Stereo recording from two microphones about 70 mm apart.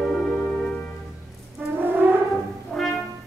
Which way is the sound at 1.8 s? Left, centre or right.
Right.